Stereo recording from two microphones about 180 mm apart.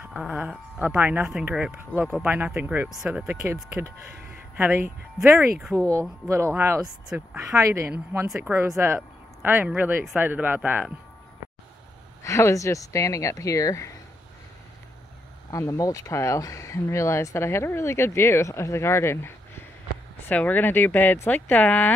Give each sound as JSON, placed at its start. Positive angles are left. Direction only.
{"t": 0.1, "sound": "speech", "side_deg": -5}
{"t": 6.2, "sound": "speech", "side_deg": -15}
{"t": 12.2, "sound": "speech", "side_deg": 15}
{"t": 15.5, "sound": "speech", "side_deg": 15}